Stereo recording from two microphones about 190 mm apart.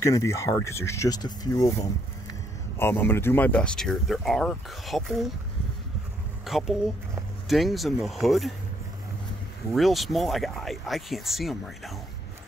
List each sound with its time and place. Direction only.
0.0 s speech: 15° left (ahead or behind)
6.4 s speech: centre (ahead or behind)
9.7 s speech: centre (ahead or behind)